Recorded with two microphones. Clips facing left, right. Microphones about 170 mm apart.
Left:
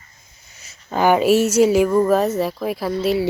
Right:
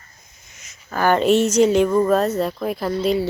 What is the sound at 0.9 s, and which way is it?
Speech, 10° left (ahead or behind).